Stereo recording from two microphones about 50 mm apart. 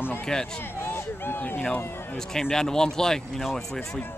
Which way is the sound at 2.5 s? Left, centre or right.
Centre.